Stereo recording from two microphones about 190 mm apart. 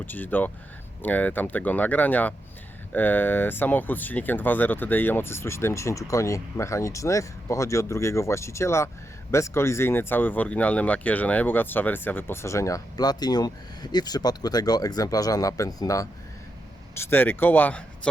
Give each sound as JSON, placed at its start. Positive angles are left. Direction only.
{"t": 0.0, "sound": "speech", "side_deg": 10}